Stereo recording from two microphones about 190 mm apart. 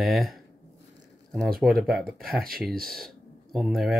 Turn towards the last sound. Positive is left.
turn(degrees=0)  # may be behind; listen again after turning